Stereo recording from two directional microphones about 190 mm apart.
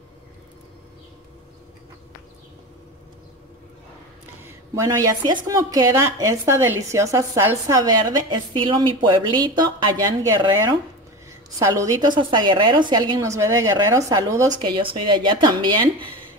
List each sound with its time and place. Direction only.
4.5 s a woman's voice: 15° right (ahead or behind)
11.6 s a woman's voice: 15° right (ahead or behind)